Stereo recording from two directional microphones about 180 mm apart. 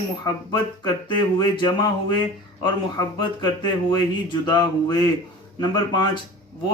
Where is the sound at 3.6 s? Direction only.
25° left (ahead or behind).